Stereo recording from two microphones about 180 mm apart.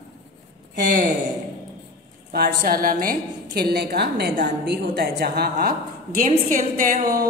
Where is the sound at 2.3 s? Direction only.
60° right (ahead or behind).